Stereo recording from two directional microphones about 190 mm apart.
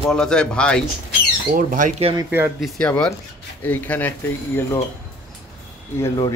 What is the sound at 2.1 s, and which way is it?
Speech, 10° right (ahead or behind).